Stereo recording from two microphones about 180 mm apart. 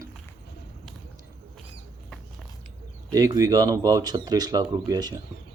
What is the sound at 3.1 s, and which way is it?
Speech, 20° right (ahead or behind).